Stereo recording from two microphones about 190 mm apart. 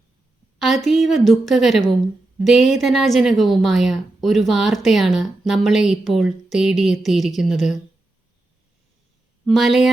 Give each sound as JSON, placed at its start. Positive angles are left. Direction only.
{"t": 0.6, "sound": "a woman's voice", "side_deg": 0}
{"t": 9.5, "sound": "a woman's voice", "side_deg": 0}